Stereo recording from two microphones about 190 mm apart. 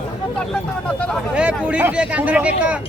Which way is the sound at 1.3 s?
5° right (ahead or behind).